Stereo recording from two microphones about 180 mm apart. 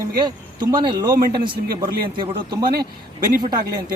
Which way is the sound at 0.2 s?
25° right (ahead or behind).